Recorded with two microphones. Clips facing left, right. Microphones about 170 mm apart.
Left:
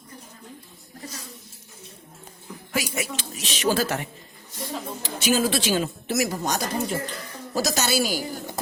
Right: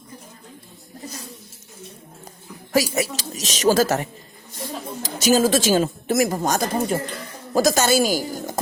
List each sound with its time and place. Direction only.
2.7 s a woman's voice: 40° right (ahead or behind)